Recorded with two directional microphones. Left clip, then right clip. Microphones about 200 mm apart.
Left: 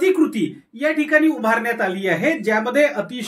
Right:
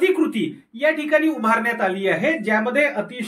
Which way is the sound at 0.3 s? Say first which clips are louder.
Left 1 dB; 50° left (ahead or behind).